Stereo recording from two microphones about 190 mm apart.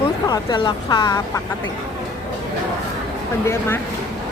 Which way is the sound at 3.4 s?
15° left (ahead or behind).